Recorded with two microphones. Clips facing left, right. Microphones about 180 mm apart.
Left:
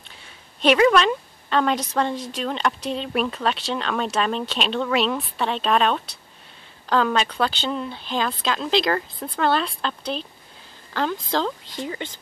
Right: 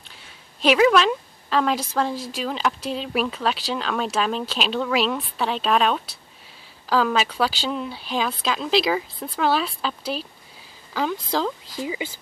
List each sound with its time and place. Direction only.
0.1 s a woman's voice: centre (ahead or behind)